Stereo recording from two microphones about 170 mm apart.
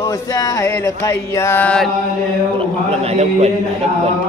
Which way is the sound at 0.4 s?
20° left (ahead or behind).